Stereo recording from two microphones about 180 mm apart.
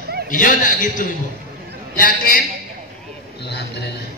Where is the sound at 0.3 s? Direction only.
45° left (ahead or behind).